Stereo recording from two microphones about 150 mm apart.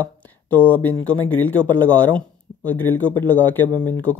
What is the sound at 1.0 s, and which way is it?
Speech, 10° left (ahead or behind).